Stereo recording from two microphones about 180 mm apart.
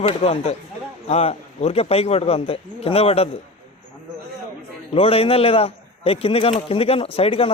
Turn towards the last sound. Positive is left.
turn(degrees=35)  # may be behind; listen again after turning